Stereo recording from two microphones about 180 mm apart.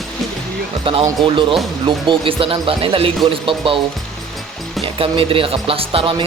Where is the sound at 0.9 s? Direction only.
30° right (ahead or behind).